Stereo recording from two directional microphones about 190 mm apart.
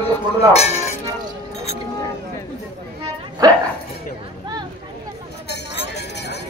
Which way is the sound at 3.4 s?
20° right (ahead or behind).